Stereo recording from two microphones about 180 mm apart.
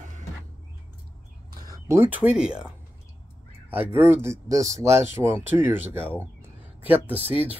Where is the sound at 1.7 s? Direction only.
15° right (ahead or behind).